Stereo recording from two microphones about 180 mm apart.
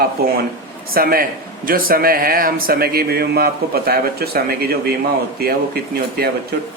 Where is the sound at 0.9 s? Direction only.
55° right (ahead or behind).